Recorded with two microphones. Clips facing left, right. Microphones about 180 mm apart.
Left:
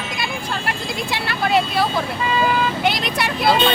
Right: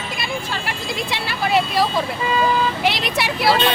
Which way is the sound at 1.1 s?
Centre (ahead or behind).